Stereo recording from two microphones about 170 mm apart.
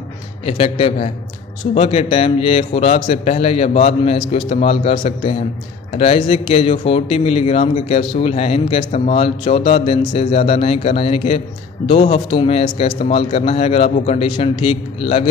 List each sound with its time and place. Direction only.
0.5 s speech: 35° left (ahead or behind)